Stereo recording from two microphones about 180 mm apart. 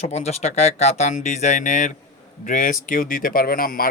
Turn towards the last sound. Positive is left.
turn(degrees=55)  # may be behind; listen again after turning